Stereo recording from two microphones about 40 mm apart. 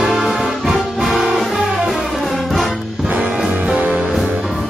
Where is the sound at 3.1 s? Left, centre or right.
Right.